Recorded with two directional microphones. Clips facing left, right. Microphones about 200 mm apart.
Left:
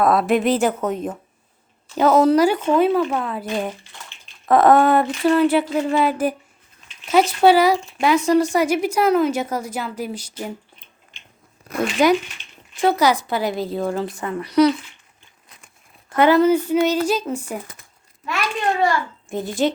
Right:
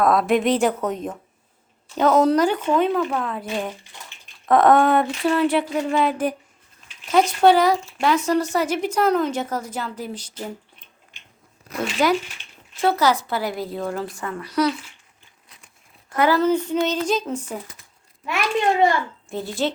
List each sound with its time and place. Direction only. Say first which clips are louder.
0.0 s a sound: left 1 dB; 5° left (ahead or behind)
2.0 s speech: left 2 dB; 5° left (ahead or behind)
2.6 s a sound: left 3 dB; 10° left (ahead or behind)
7.1 s speech: left 1 dB; 5° left (ahead or behind)
12.0 s a woman's voice: left 4 dB; 15° left (ahead or behind)
15.4 s crumpling: left 2 dB; 50° left (ahead or behind)
16.0 s speech: left 4 dB; 25° left (ahead or behind)
16.4 s speech: left 4 dB; 10° left (ahead or behind)
17.6 s speech: left 1 dB; 50° left (ahead or behind)
18.6 s a child's voice: right 1 dB; 20° right (ahead or behind)
19.3 s speech: left 4 dB; 15° left (ahead or behind)